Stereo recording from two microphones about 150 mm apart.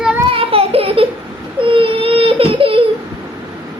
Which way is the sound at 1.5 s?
35° right (ahead or behind).